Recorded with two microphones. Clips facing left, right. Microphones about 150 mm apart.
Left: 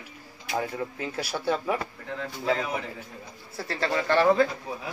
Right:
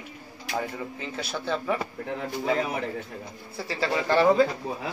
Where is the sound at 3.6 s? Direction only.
5° right (ahead or behind).